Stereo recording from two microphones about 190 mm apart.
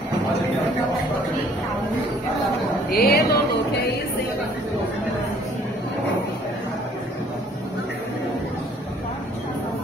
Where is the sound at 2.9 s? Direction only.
55° left (ahead or behind).